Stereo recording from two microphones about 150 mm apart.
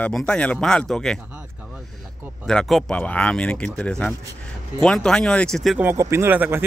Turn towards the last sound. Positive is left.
turn(degrees=-10)  # may be behind; listen again after turning